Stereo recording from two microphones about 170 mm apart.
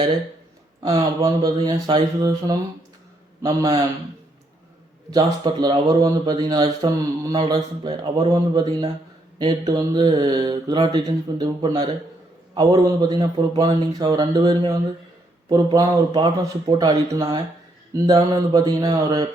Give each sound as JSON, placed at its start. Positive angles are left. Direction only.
{"t": 1.2, "sound": "a man's voice", "side_deg": -25}
{"t": 5.1, "sound": "a man's voice", "side_deg": -25}